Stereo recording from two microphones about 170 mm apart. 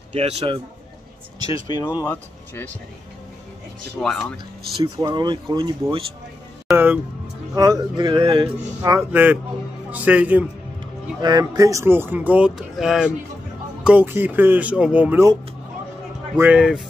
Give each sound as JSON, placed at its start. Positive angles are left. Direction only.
{"t": 0.1, "sound": "a man's voice", "side_deg": -40}
{"t": 1.5, "sound": "speech", "side_deg": 25}
{"t": 2.0, "sound": "speech", "side_deg": 10}
{"t": 3.9, "sound": "speech", "side_deg": 5}
{"t": 4.9, "sound": "speech", "side_deg": -25}
{"t": 6.7, "sound": "speech", "side_deg": -10}
{"t": 7.5, "sound": "speech", "side_deg": -20}
{"t": 9.1, "sound": "a man's voice", "side_deg": -10}
{"t": 11.1, "sound": "speech", "side_deg": -25}
{"t": 16.3, "sound": "speech", "side_deg": -5}